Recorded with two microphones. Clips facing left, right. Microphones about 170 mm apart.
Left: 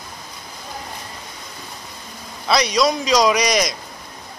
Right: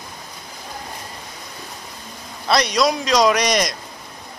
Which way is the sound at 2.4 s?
Centre (ahead or behind).